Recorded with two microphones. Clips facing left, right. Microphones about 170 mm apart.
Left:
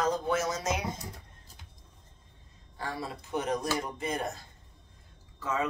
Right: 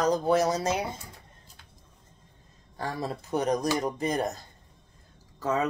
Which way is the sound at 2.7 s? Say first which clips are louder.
Right 4 dB; 40° right (ahead or behind).